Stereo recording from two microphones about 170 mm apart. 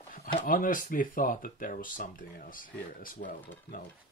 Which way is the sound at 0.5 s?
55° left (ahead or behind).